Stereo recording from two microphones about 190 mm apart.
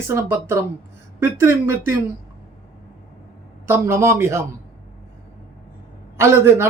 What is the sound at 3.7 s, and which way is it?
Speech, 10° right (ahead or behind).